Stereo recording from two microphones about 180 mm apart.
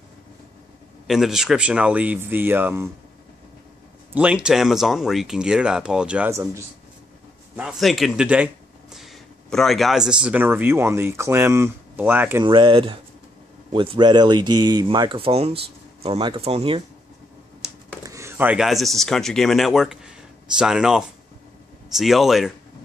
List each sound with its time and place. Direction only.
1.0 s speech: centre (ahead or behind)
4.1 s speech: 5° right (ahead or behind)
12.4 s speech: 25° right (ahead or behind)
18.0 s speech: 15° right (ahead or behind)